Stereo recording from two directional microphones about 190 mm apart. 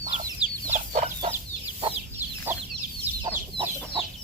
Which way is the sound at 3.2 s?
25° right (ahead or behind).